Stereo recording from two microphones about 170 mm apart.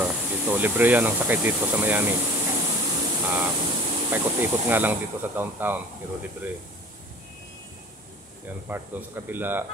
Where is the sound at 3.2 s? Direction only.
10° right (ahead or behind).